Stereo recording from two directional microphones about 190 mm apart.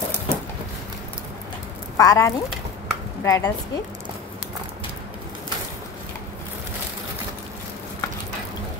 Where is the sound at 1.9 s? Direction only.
20° left (ahead or behind).